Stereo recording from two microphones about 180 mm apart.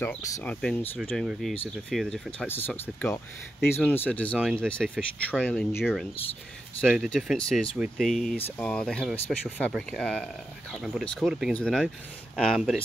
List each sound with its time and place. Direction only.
0.2 s speech: 10° left (ahead or behind)